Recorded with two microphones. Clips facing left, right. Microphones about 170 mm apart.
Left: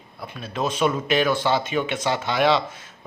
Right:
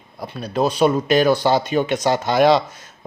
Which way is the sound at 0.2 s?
40° right (ahead or behind).